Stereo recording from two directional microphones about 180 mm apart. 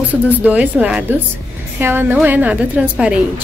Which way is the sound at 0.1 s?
10° right (ahead or behind).